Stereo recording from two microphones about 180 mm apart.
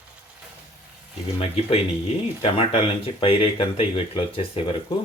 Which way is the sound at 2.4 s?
30° left (ahead or behind).